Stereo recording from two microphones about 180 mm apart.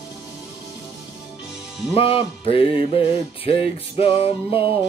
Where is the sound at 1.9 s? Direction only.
30° left (ahead or behind).